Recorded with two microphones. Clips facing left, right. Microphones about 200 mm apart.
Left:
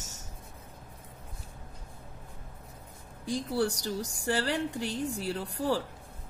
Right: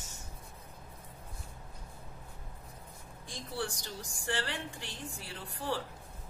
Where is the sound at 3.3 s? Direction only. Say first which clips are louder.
Left 10 dB; 40° left (ahead or behind).